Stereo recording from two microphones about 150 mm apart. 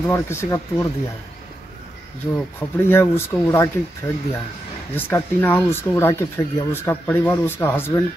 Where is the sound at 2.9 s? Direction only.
15° left (ahead or behind).